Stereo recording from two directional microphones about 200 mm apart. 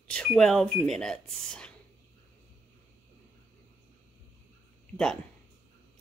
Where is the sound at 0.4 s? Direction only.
5° left (ahead or behind).